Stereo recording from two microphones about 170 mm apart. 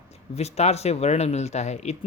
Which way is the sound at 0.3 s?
40° left (ahead or behind).